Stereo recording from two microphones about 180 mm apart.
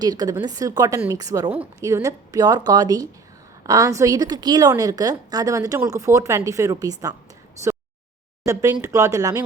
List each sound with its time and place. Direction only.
0.0 s speech: 20° right (ahead or behind)
8.4 s speech: 15° right (ahead or behind)